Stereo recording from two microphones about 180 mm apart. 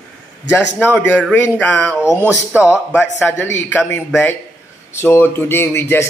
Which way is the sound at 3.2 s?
10° left (ahead or behind).